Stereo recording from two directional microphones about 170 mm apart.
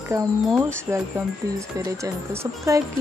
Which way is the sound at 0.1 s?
20° right (ahead or behind).